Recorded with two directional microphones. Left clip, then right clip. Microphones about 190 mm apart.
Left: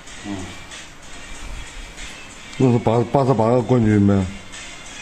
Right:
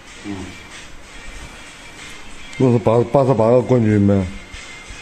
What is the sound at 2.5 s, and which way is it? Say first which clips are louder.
A man's voice: right 3 dB; 10° right (ahead or behind).